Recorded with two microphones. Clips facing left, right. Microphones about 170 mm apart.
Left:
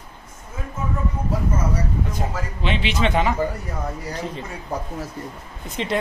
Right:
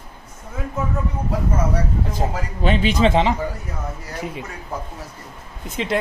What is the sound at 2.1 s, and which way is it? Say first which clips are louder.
Speech: right 3 dB; 40° right (ahead or behind).